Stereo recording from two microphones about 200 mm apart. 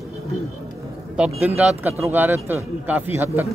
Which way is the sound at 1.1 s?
5° right (ahead or behind).